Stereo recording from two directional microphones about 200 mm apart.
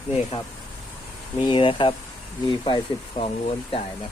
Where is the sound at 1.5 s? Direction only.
25° left (ahead or behind).